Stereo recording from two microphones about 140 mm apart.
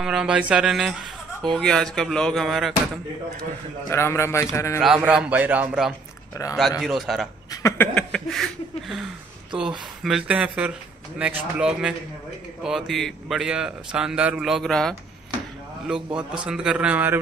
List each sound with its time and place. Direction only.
0.0 s speech: 5° right (ahead or behind)
3.9 s a man's voice: 20° left (ahead or behind)
4.8 s speech: 5° right (ahead or behind)
7.5 s a sound: 20° left (ahead or behind)
7.9 s a sound: 5° left (ahead or behind)
9.6 s speech: 5° right (ahead or behind)
16.2 s speech: 5° right (ahead or behind)